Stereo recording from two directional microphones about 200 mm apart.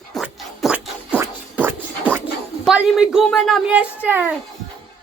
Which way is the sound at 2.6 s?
5° right (ahead or behind).